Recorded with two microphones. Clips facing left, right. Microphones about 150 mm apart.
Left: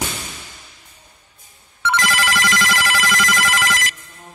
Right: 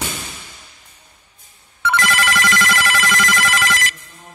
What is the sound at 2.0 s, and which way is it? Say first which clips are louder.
Telephone bell ringing: right 2 dB; 60° right (ahead or behind).